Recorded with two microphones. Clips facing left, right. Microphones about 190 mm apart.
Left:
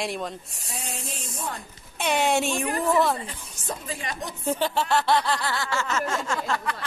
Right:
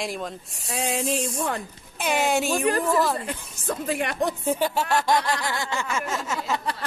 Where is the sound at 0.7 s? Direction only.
90° right.